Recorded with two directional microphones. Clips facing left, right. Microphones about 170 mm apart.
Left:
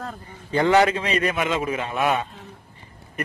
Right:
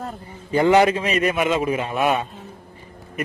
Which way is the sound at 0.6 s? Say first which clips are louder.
Right 2 dB; 20° right (ahead or behind).